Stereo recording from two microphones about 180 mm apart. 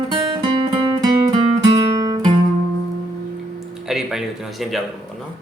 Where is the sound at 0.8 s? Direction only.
20° right (ahead or behind).